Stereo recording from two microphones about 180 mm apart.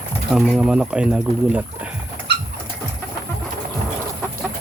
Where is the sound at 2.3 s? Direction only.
70° right (ahead or behind).